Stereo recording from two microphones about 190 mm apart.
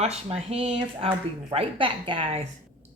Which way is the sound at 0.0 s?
35° right (ahead or behind).